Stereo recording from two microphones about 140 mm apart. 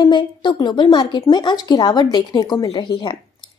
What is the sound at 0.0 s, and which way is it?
Speech, 35° left (ahead or behind).